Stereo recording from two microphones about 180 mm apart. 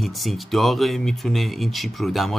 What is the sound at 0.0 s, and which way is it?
Speech, centre (ahead or behind).